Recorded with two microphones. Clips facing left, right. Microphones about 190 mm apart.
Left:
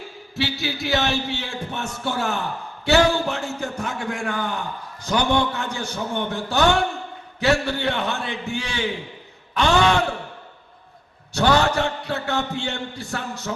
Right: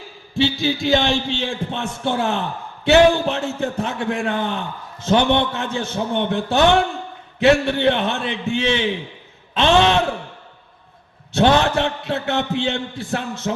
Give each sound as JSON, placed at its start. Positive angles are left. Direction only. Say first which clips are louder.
{"t": 0.3, "sound": "a man's voice", "louder": "right 7 dB", "side_deg": -20}
{"t": 11.3, "sound": "a man's voice", "louder": "right 3 dB", "side_deg": -20}